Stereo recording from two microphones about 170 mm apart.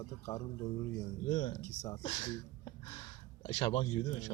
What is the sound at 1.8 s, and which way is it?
Speech, 15° left (ahead or behind).